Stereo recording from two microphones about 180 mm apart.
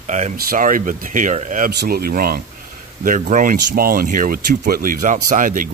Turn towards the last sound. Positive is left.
turn(degrees=-45)  # may be behind; listen again after turning